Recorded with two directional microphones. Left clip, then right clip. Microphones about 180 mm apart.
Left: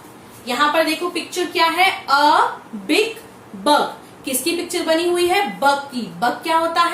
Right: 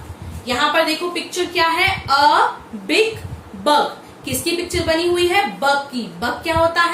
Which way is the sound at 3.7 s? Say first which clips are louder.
Right 1 dB; 15° left (ahead or behind).